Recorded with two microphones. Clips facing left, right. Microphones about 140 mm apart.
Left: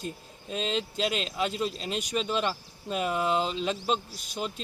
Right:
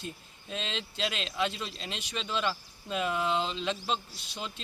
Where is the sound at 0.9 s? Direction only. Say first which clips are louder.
Left 3 dB; 40° left (ahead or behind).